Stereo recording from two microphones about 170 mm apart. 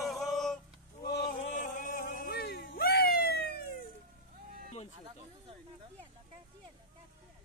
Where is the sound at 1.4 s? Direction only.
50° left (ahead or behind); by 3.5 s 70° left (ahead or behind).